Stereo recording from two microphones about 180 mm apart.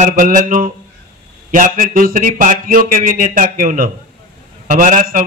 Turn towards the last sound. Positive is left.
turn(degrees=-50)  # may be behind; listen again after turning